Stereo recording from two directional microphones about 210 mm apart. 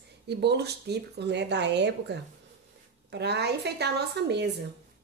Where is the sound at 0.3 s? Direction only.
55° right (ahead or behind).